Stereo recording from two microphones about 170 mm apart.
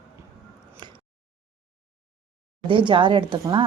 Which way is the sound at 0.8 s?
25° right (ahead or behind).